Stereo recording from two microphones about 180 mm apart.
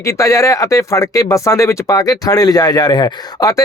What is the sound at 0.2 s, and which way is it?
Speech, 20° left (ahead or behind).